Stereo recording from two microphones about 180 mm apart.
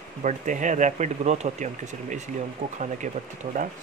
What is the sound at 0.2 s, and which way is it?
Speech, 45° right (ahead or behind).